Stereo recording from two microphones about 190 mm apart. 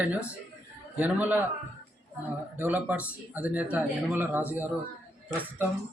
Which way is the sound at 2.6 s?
10° right (ahead or behind).